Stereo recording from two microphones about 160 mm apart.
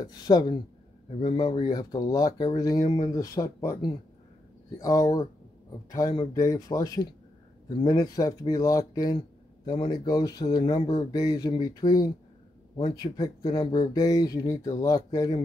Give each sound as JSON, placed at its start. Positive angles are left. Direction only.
{"t": 0.0, "sound": "speech", "side_deg": 25}